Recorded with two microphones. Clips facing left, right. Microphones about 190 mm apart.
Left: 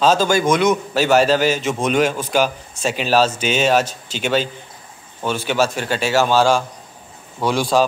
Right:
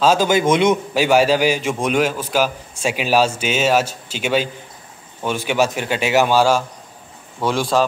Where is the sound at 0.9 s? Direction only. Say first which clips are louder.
Left 1 dB; 10° right (ahead or behind).